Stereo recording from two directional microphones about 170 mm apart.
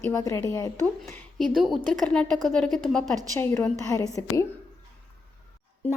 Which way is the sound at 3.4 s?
15° left (ahead or behind).